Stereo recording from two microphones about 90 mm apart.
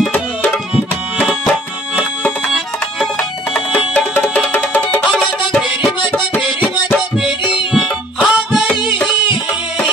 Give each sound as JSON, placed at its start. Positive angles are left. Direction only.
{"t": 3.0, "sound": "music", "side_deg": 5}
{"t": 7.2, "sound": "music", "side_deg": -10}
{"t": 8.9, "sound": "music", "side_deg": 55}